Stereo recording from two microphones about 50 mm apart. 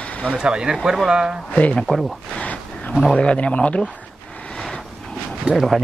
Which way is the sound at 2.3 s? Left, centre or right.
Left.